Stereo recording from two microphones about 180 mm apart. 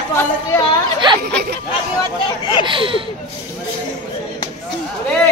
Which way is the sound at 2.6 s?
30° right (ahead or behind).